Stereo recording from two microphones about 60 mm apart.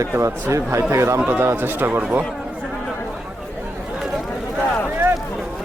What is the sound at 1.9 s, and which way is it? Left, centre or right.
Speech, right.